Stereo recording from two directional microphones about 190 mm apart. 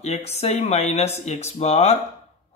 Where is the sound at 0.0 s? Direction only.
35° left (ahead or behind).